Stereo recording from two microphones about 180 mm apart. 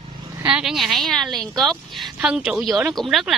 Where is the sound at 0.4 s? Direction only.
5° right (ahead or behind).